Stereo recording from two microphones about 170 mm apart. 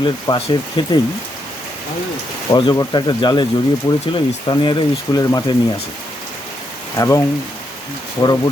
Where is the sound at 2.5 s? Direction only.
25° left (ahead or behind).